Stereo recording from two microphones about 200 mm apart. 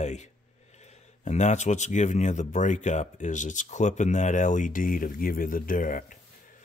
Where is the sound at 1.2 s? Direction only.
35° left (ahead or behind).